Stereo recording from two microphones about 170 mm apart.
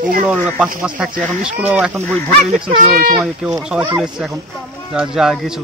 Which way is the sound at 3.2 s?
5° right (ahead or behind).